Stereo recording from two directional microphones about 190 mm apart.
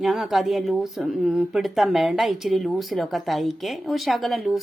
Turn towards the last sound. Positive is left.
turn(degrees=0)  # may be behind; listen again after turning